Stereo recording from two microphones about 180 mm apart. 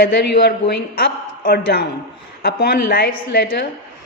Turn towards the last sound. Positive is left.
turn(degrees=65)  # may be behind; listen again after turning